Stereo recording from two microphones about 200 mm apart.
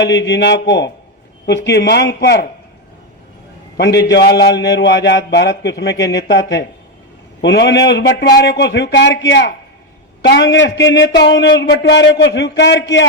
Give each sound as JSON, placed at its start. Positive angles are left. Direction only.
{"t": 0.0, "sound": "a man's voice", "side_deg": 60}
{"t": 3.8, "sound": "a man's voice", "side_deg": 60}
{"t": 7.4, "sound": "a man's voice", "side_deg": 60}